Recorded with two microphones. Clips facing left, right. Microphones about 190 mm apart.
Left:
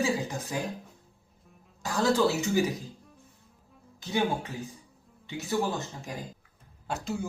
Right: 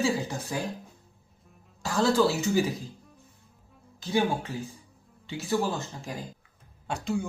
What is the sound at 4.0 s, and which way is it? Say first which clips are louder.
Speech: right 2 dB; 20° left (ahead or behind).